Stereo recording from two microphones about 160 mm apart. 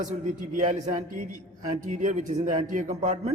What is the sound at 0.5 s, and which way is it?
A man's voice, 45° right (ahead or behind).